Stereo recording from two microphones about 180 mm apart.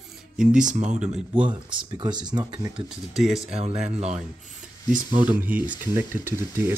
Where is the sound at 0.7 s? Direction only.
40° right (ahead or behind).